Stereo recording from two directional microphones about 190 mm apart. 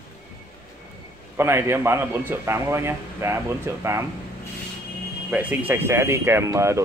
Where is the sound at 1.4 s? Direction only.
10° right (ahead or behind).